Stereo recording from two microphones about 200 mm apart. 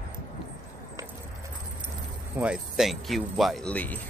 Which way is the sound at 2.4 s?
5° right (ahead or behind).